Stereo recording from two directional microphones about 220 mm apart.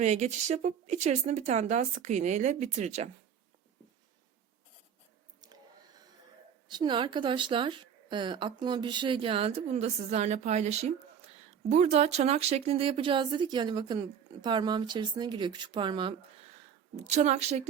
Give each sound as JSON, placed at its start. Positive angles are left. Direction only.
{"t": 0.0, "sound": "a woman's voice", "side_deg": -30}
{"t": 6.7, "sound": "a woman's voice", "side_deg": -20}